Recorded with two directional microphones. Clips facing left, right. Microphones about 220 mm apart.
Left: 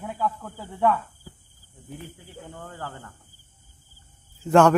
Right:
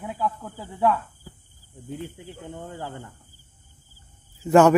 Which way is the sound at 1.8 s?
20° right (ahead or behind).